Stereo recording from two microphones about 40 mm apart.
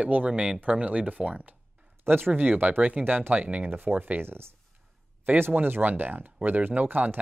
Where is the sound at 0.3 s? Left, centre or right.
Right.